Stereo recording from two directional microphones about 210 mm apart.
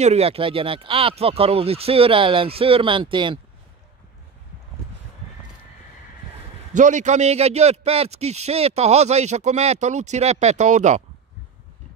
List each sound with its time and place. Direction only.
0.0 s speech: 30° right (ahead or behind)
6.7 s a man's voice: 35° right (ahead or behind)